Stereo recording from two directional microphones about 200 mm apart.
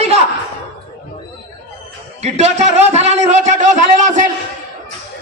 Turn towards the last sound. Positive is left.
turn(degrees=-40)  # may be behind; listen again after turning